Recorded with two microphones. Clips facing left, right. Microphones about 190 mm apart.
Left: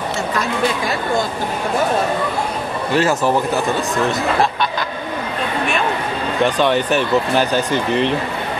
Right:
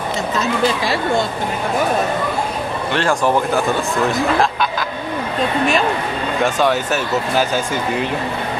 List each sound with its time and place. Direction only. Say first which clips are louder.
0.4 s speech: right 2 dB; 25° right (ahead or behind)
2.9 s speech: left 2 dB; 5° left (ahead or behind)
6.4 s speech: left 1 dB; 5° right (ahead or behind)